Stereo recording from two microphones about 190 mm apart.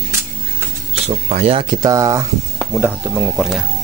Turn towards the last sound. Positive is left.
turn(degrees=-5)  # may be behind; listen again after turning